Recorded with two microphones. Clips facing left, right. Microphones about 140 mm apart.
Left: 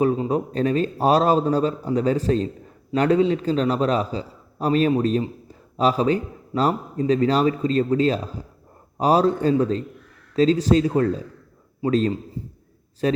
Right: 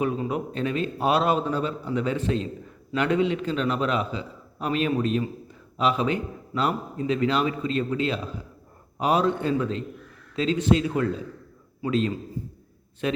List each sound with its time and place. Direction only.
0.2 s a man's voice: 35° left (ahead or behind)